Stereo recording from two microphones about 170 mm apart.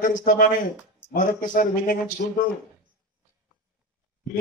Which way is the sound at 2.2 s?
65° left (ahead or behind).